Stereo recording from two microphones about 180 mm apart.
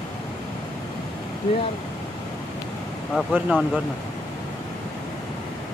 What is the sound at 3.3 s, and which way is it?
Speech, centre (ahead or behind).